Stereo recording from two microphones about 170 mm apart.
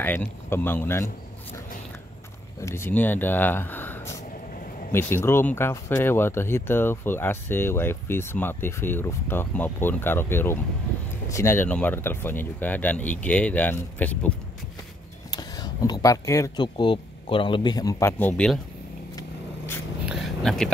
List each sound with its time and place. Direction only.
0.0 s speech: 10° left (ahead or behind)
2.6 s speech: 15° left (ahead or behind)
15.3 s speech: 25° left (ahead or behind)
19.1 s vehicle: 15° left (ahead or behind)
20.1 s a sound: centre (ahead or behind)